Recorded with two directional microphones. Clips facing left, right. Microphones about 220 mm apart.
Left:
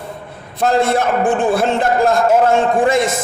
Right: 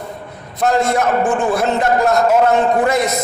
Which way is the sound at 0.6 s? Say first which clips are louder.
Left 1 dB; 30° left (ahead or behind).